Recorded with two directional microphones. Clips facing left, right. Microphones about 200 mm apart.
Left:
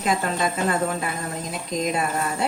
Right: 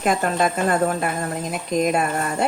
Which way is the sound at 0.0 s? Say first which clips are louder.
Right 3 dB; 50° right (ahead or behind).